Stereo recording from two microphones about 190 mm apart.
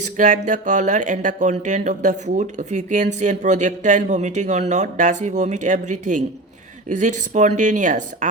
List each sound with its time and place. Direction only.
0.0 s speech: 40° right (ahead or behind)